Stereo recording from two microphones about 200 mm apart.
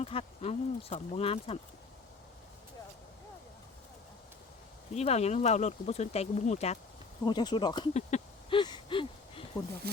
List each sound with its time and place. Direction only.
0.0 s speech: 30° left (ahead or behind)
4.9 s speech: 30° left (ahead or behind)
7.3 s speech: 20° left (ahead or behind)
7.9 s a sound: 30° left (ahead or behind)